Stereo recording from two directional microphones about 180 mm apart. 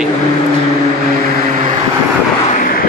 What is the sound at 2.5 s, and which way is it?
Vehicle, 50° left (ahead or behind).